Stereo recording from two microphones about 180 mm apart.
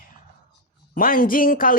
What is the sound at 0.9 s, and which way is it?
Speech, 50° left (ahead or behind).